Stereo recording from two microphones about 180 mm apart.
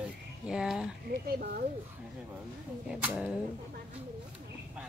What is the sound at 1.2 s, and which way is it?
Speech, 60° right (ahead or behind).